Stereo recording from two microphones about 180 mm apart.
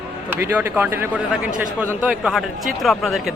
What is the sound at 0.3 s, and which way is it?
A man's voice, 10° right (ahead or behind).